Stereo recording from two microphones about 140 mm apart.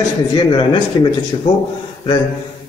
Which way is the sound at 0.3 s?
30° left (ahead or behind).